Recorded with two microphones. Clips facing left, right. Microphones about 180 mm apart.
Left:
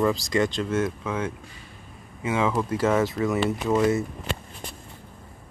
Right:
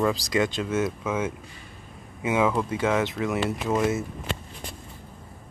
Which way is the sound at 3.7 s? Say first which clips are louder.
Left 3 dB; 15° right (ahead or behind).